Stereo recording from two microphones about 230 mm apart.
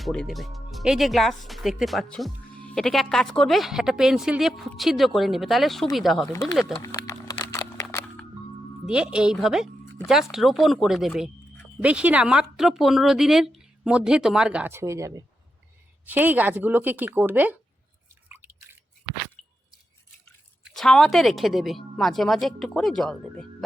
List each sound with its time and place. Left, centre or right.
0.0 s speech: centre
6.8 s a sound: centre
8.9 s speech: centre
18.1 s drip: centre
19.4 s a sound: centre
20.7 s speech: centre